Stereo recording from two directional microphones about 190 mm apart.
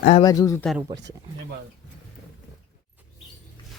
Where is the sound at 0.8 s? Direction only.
20° right (ahead or behind).